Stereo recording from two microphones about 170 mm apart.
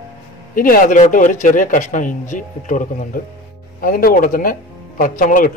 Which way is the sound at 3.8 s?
60° left (ahead or behind).